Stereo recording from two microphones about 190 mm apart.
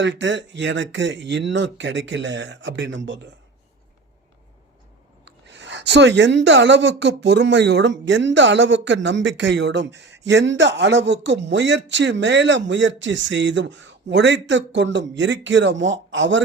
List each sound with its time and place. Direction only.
0.0 s a woman's voice: 75° right (ahead or behind)
5.2 s a woman's voice: 70° right (ahead or behind)